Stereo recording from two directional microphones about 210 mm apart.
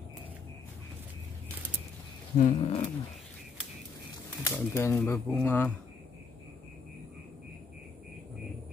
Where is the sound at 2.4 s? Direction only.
30° left (ahead or behind).